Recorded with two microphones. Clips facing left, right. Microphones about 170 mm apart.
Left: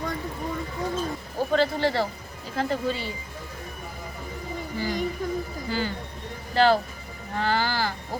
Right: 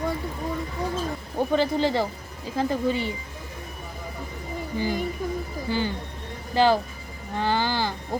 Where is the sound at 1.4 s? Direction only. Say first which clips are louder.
Right 1 dB; 15° right (ahead or behind).